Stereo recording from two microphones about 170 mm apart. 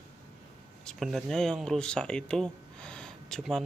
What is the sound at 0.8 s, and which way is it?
Speech, centre (ahead or behind).